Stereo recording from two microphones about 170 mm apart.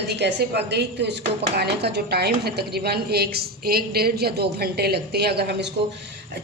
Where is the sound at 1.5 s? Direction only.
75° right (ahead or behind).